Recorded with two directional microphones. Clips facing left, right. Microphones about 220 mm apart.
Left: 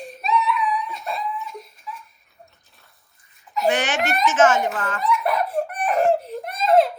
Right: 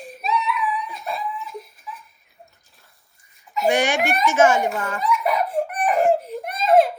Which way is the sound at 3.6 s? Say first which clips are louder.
Right 2 dB; 10° right (ahead or behind).